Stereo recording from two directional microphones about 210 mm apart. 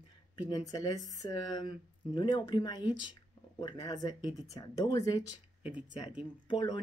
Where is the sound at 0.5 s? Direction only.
20° left (ahead or behind).